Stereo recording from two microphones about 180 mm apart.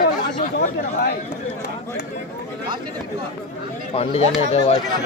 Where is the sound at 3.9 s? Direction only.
35° left (ahead or behind).